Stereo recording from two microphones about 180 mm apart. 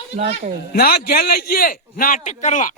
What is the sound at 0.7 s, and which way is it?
A man's voice, 60° left (ahead or behind).